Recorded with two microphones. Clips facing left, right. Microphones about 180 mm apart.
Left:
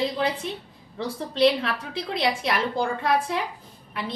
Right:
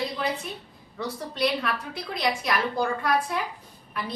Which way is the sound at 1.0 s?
25° left (ahead or behind).